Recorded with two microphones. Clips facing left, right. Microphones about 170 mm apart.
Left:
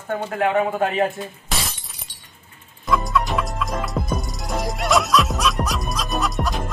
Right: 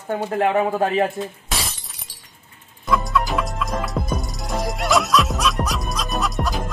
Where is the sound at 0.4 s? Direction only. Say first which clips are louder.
Right 1 dB; 30° right (ahead or behind).